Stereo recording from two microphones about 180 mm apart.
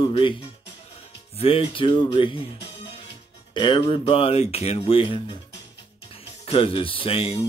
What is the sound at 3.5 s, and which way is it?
Speech, 25° left (ahead or behind).